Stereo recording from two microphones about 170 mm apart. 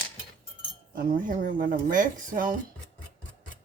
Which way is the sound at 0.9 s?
55° right (ahead or behind).